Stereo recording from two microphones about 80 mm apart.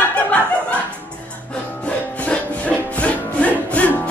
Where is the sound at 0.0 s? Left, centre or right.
Centre.